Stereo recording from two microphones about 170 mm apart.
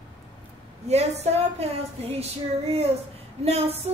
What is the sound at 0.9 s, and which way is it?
A woman's voice, 40° right (ahead or behind).